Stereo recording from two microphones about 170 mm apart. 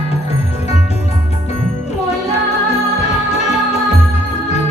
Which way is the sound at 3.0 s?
40° left (ahead or behind).